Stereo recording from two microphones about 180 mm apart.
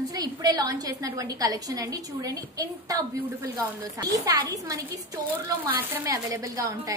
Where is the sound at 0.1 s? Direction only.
20° right (ahead or behind).